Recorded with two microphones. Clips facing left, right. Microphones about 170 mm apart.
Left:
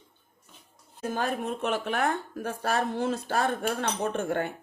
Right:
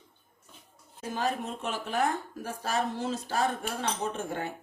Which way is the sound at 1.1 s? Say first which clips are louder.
Left 1 dB; 60° left (ahead or behind).